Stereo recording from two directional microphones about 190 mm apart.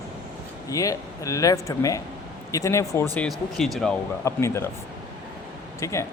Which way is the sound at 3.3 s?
Centre (ahead or behind).